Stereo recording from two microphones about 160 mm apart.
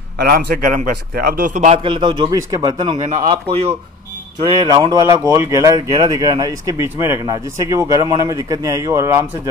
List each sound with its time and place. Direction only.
0.2 s a man's voice: 65° right (ahead or behind)
1.8 s a man's voice: 30° right (ahead or behind)
4.5 s speech: 25° right (ahead or behind)